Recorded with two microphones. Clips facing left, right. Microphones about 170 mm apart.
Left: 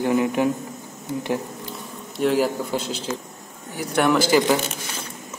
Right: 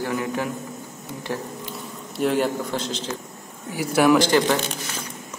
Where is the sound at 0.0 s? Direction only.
20° left (ahead or behind).